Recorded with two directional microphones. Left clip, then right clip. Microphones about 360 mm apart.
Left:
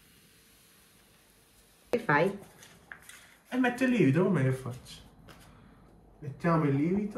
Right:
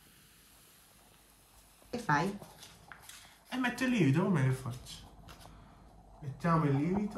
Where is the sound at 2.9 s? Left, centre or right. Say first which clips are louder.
Left 6 dB; centre.